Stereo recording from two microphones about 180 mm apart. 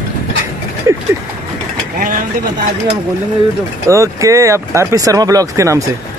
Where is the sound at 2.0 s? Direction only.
50° right (ahead or behind).